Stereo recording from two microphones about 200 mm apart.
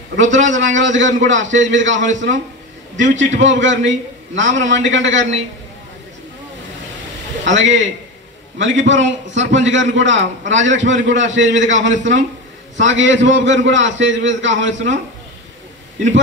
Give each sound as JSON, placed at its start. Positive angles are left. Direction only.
{"t": 0.1, "sound": "a man's voice", "side_deg": -70}
{"t": 7.4, "sound": "a man's voice", "side_deg": -65}